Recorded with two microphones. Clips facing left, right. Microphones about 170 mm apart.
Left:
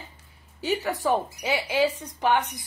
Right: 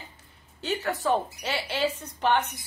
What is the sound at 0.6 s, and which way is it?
Speech, 5° left (ahead or behind).